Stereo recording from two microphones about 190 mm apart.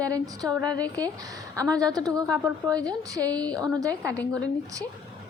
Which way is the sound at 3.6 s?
20° right (ahead or behind).